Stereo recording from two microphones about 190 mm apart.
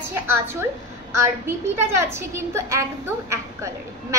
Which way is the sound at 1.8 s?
15° right (ahead or behind).